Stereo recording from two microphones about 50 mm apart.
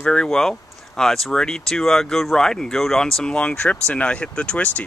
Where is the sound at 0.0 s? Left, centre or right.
Centre.